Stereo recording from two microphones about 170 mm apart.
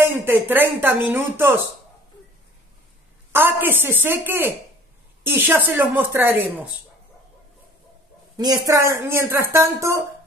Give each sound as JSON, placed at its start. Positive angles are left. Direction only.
{"t": 0.0, "sound": "speech", "side_deg": -10}
{"t": 3.3, "sound": "speech", "side_deg": -10}
{"t": 8.6, "sound": "speech", "side_deg": -15}